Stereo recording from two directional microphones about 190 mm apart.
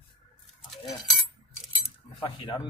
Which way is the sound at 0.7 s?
Centre (ahead or behind).